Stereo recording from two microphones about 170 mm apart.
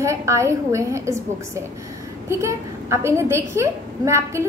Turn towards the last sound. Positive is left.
turn(degrees=-15)  # may be behind; listen again after turning